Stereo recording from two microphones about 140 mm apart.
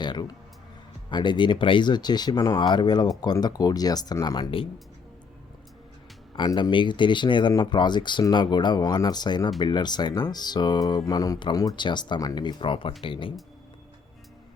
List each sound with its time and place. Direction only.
0.0 s speech: 30° left (ahead or behind)
6.3 s speech: 35° left (ahead or behind)